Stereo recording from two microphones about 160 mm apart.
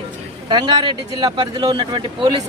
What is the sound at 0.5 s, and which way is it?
Speech, 30° right (ahead or behind).